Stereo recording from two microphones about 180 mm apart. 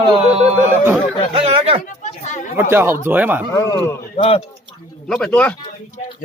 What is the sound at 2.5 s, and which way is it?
Speech, 15° right (ahead or behind).